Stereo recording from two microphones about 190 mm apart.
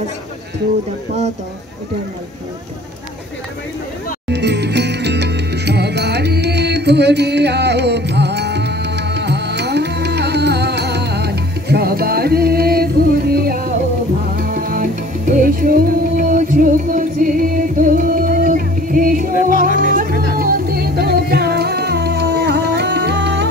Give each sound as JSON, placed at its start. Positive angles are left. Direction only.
{"t": 4.3, "sound": "music", "side_deg": -65}